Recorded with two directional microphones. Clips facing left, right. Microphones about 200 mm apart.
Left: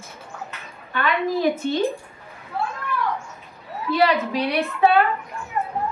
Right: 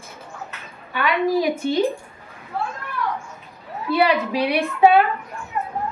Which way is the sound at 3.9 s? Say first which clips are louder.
Right 1 dB; 10° right (ahead or behind).